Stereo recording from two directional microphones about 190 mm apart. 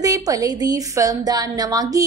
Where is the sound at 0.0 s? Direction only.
20° right (ahead or behind).